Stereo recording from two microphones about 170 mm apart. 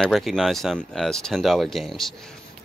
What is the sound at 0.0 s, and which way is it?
Speech, centre (ahead or behind).